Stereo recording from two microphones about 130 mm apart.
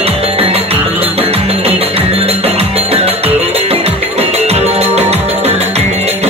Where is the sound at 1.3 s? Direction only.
50° right (ahead or behind).